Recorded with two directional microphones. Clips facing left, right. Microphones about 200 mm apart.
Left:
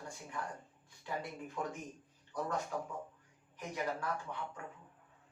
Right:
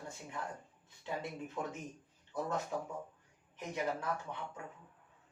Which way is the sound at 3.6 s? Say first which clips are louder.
Right 1 dB; 20° right (ahead or behind).